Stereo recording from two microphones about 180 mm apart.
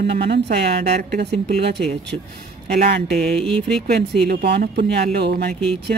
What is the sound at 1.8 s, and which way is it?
Mantra, 5° left (ahead or behind).